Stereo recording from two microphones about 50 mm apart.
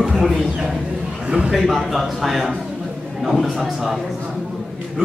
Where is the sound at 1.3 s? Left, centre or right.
Right.